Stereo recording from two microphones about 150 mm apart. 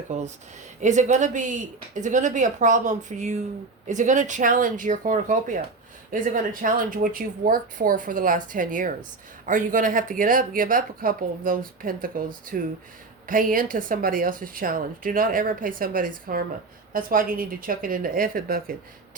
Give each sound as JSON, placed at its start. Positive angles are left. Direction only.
{"t": 0.1, "sound": "speech", "side_deg": -50}